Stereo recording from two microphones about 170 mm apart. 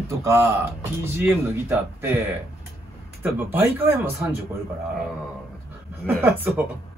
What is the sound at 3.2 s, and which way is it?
Speech, 10° right (ahead or behind).